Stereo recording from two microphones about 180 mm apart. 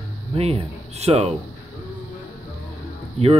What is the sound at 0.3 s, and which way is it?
Speech, 35° right (ahead or behind).